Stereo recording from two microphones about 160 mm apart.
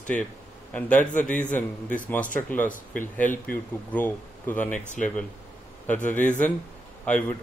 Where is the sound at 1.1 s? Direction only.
50° left (ahead or behind).